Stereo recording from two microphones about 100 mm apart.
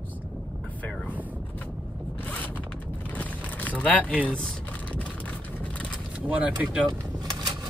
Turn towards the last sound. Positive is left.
turn(degrees=-45)  # may be behind; listen again after turning